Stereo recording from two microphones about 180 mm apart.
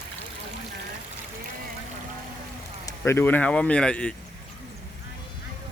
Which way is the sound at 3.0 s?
10° left (ahead or behind).